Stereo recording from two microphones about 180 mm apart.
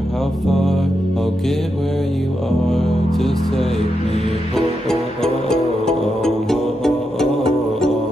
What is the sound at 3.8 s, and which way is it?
Music, 30° right (ahead or behind).